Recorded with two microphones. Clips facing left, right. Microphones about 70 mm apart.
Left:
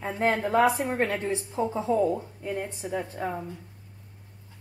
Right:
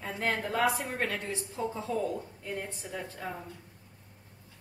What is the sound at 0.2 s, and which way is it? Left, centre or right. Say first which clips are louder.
A woman's voice: left 7 dB; left.